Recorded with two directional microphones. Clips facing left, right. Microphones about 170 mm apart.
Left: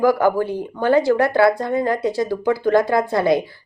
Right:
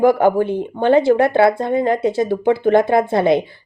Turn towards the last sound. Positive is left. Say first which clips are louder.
# right 3 dB
turn(degrees=-25)  # may be behind; listen again after turning